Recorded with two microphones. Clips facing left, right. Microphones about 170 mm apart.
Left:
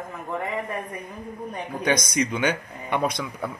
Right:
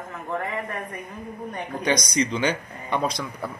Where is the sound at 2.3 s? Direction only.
10° left (ahead or behind).